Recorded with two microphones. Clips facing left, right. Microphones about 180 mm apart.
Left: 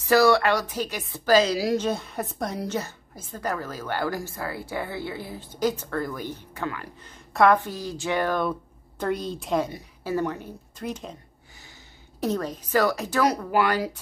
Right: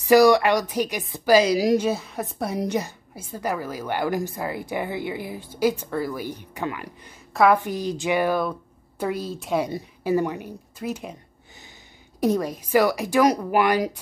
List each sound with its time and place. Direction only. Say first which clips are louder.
0.0 s a woman's voice: right 4 dB; 15° right (ahead or behind)
7.3 s a woman's voice: right 1 dB; 5° right (ahead or behind)
7.6 s a woman's voice: right 5 dB; 20° right (ahead or behind)
12.2 s a woman's voice: right 5 dB; 10° right (ahead or behind)